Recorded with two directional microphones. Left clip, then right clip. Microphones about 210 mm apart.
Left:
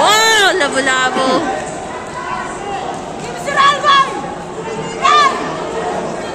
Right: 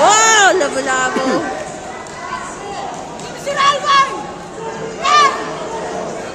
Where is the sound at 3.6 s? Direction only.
35° left (ahead or behind).